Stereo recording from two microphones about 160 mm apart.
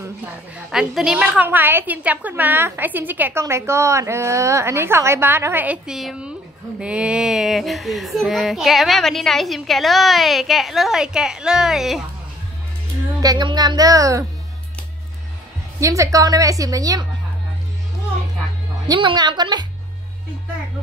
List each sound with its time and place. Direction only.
0.7 s a woman's voice: 5° right (ahead or behind)
13.2 s a woman's voice: 25° right (ahead or behind)
15.8 s a woman's voice: 20° right (ahead or behind)
18.9 s a woman's voice: 30° right (ahead or behind)